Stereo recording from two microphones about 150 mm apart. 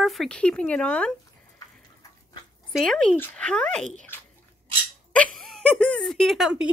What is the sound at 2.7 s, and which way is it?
Speech, 5° left (ahead or behind).